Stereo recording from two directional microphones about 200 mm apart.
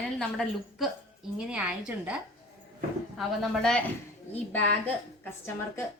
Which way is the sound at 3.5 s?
5° left (ahead or behind).